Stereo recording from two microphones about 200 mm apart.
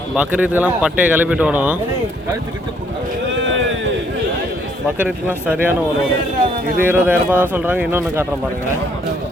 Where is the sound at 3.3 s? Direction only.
65° right (ahead or behind).